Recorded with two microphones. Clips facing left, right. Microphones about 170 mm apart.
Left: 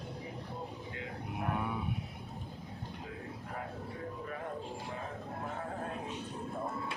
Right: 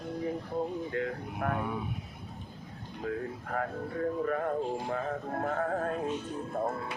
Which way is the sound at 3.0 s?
60° right (ahead or behind).